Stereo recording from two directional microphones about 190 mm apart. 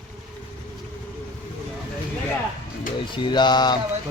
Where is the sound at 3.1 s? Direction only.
25° left (ahead or behind).